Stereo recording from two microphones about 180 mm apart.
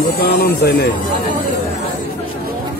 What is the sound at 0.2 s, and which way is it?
Speech, 60° left (ahead or behind).